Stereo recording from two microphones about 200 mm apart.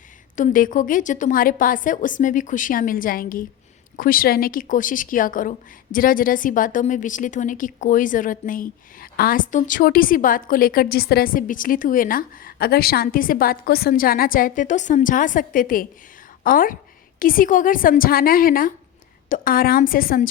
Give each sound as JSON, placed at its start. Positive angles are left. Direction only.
{"t": 0.3, "sound": "a woman's voice", "side_deg": 40}